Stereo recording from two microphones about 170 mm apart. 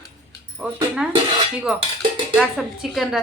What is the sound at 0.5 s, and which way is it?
Speech, 5° right (ahead or behind).